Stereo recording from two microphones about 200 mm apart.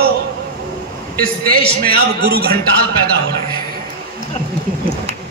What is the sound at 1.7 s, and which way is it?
Speech, 50° right (ahead or behind).